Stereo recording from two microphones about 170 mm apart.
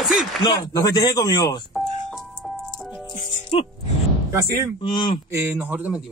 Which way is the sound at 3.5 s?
35° left (ahead or behind).